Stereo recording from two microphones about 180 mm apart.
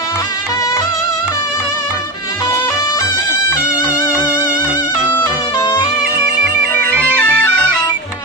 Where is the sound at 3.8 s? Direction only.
5° right (ahead or behind).